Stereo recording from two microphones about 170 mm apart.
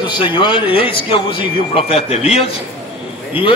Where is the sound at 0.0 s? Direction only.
30° left (ahead or behind).